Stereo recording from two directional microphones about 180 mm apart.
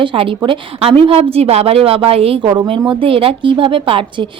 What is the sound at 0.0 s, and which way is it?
A woman's voice, 30° right (ahead or behind).